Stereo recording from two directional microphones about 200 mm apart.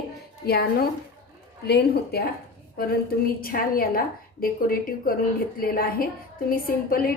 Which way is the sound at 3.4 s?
45° left (ahead or behind).